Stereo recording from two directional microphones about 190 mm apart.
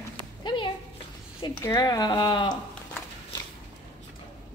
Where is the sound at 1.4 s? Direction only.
20° left (ahead or behind).